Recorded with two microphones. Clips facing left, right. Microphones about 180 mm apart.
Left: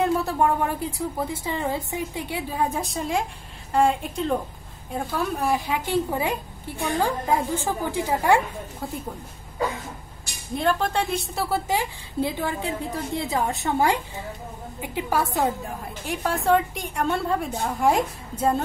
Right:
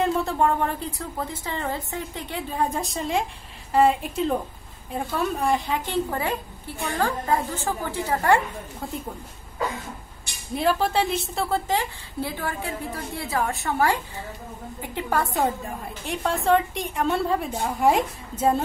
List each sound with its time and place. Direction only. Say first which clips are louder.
0.0 s a woman's voice: even; 5° left (ahead or behind)
10.5 s a woman's voice: right 1 dB; 5° right (ahead or behind)